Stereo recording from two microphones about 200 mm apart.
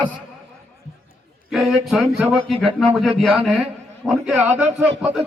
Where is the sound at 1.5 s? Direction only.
Centre (ahead or behind).